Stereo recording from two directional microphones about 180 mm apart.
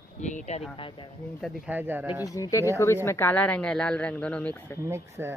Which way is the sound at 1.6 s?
10° right (ahead or behind).